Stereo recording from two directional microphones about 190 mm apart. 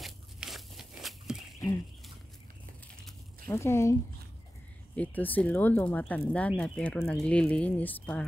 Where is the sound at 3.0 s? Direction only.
10° left (ahead or behind).